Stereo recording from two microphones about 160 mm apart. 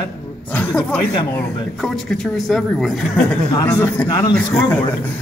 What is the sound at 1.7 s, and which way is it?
A man's voice, centre (ahead or behind).